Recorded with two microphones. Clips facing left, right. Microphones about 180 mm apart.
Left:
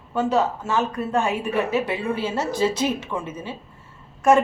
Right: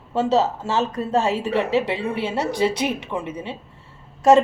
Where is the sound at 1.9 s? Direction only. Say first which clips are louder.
Even; 70° right (ahead or behind).